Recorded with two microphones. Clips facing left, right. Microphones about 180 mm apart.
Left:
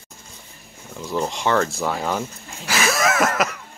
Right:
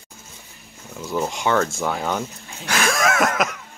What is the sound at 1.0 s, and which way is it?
Speech, 5° right (ahead or behind).